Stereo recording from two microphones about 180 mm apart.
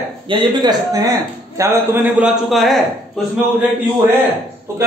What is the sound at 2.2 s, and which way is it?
Speech, centre (ahead or behind).